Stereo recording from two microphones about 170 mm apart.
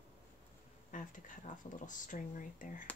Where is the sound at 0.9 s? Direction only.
50° left (ahead or behind).